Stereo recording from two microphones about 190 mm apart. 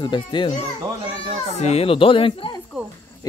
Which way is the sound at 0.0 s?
25° left (ahead or behind).